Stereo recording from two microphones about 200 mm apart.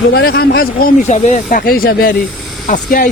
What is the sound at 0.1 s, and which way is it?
Speech, 55° left (ahead or behind).